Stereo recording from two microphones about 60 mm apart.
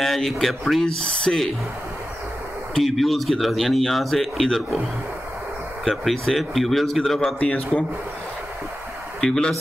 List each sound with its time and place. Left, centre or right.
0.0 s speech: centre
0.8 s speech: centre
2.8 s speech: centre
5.9 s speech: centre
7.3 s a man's voice: centre
9.2 s speech: centre